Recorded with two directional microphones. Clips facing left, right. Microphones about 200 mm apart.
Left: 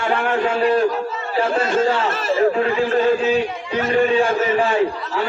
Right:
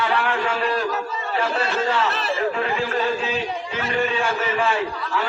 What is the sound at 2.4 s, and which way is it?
A man's voice, 35° left (ahead or behind).